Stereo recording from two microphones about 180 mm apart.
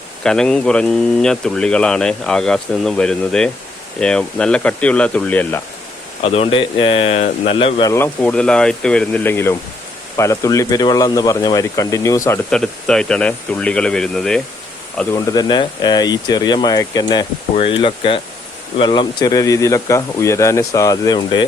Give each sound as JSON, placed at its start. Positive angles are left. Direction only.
{"t": 0.2, "sound": "speech", "side_deg": 5}
{"t": 6.2, "sound": "speech", "side_deg": 35}
{"t": 7.9, "sound": "speech", "side_deg": 10}
{"t": 12.5, "sound": "speech", "side_deg": 5}
{"t": 15.1, "sound": "speech", "side_deg": 20}